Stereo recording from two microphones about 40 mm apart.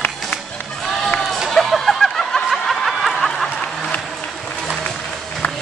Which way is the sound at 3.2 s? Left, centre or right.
Centre.